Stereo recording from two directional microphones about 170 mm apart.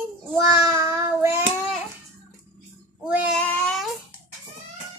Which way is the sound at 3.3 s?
5° left (ahead or behind).